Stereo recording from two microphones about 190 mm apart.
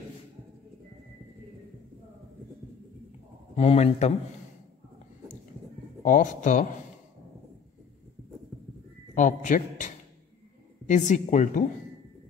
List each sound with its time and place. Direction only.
3.5 s a man's voice: 35° left (ahead or behind)
6.0 s a man's voice: 40° left (ahead or behind)
9.1 s a man's voice: 40° left (ahead or behind)